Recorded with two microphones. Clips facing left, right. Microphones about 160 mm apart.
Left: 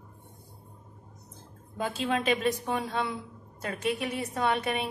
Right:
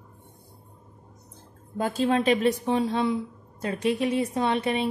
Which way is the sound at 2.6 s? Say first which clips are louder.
Right 7 dB; 30° right (ahead or behind).